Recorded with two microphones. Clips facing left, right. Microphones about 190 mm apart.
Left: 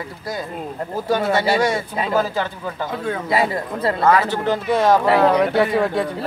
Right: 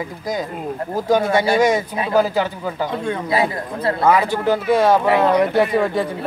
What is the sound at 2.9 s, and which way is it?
Speech, 5° left (ahead or behind).